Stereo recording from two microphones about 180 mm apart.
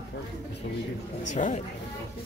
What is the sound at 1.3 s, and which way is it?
Speech, 40° left (ahead or behind).